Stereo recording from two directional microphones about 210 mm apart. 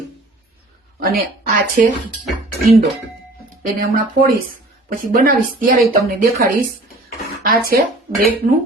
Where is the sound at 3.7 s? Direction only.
45° right (ahead or behind).